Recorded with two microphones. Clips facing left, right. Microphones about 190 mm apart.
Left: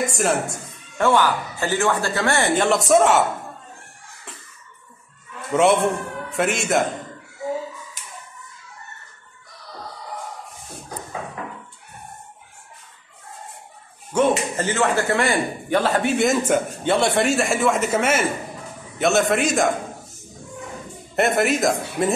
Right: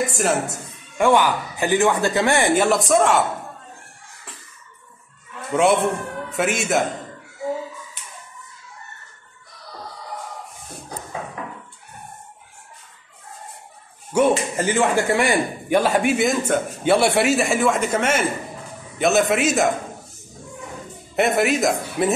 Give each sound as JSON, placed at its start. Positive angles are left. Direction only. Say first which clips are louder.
{"t": 0.1, "sound": "a man's voice", "louder": "even", "side_deg": 0}
{"t": 0.9, "sound": "speech", "louder": "right 1 dB", "side_deg": -15}
{"t": 5.5, "sound": "a man's voice", "louder": "left 1 dB", "side_deg": 0}
{"t": 14.1, "sound": "speech", "louder": "right 1 dB", "side_deg": -10}
{"t": 16.3, "sound": "speech", "louder": "left 1 dB", "side_deg": 5}
{"t": 16.8, "sound": "a man's voice", "louder": "right 4 dB", "side_deg": -10}
{"t": 21.2, "sound": "a man's voice", "louder": "even", "side_deg": 0}